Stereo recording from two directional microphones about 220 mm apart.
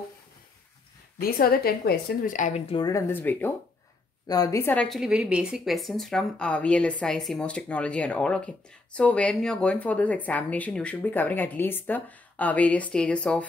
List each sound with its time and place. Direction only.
1.2 s a woman's voice: 45° left (ahead or behind); by 13.5 s 5° left (ahead or behind)